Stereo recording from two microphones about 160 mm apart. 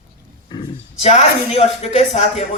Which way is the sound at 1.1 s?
40° left (ahead or behind).